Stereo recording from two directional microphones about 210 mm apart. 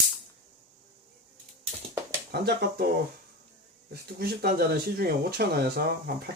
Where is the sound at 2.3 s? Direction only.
50° right (ahead or behind).